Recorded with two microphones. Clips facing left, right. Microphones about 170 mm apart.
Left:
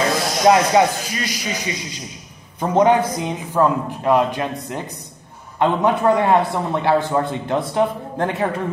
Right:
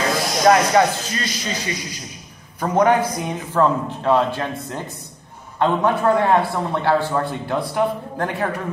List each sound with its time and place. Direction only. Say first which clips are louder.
0.5 s a man's voice: left 1 dB; 15° left (ahead or behind)